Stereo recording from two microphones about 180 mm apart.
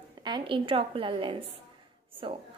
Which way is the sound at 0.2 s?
25° right (ahead or behind).